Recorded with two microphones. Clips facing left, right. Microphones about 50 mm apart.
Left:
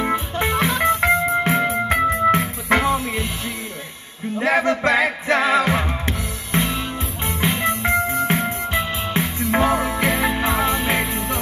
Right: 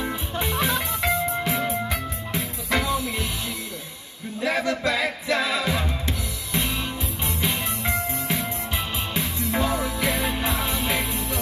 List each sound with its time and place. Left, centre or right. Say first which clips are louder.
0.0 s music: left 7 dB; left
4.4 s music: left 6 dB; left